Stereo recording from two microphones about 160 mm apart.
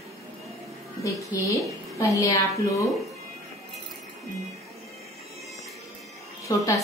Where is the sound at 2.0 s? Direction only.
20° left (ahead or behind).